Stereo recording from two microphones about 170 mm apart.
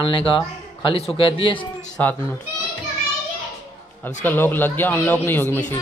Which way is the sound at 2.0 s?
10° left (ahead or behind).